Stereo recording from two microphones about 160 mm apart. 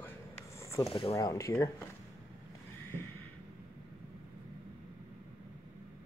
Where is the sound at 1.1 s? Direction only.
20° left (ahead or behind).